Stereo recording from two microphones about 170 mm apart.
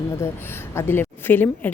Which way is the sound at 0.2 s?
15° left (ahead or behind).